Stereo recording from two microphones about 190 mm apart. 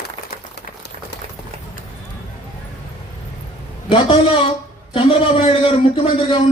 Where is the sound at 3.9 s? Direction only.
30° left (ahead or behind).